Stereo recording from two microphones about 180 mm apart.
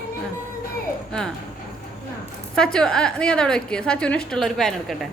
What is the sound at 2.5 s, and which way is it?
A woman's voice, 5° left (ahead or behind).